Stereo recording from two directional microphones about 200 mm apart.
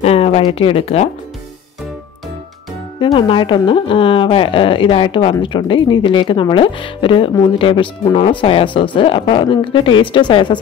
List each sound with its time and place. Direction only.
0.0 s speech: 30° left (ahead or behind)
3.0 s a woman's voice: 25° left (ahead or behind)